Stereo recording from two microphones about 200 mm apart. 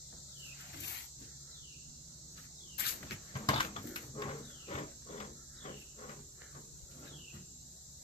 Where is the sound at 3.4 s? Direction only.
25° left (ahead or behind).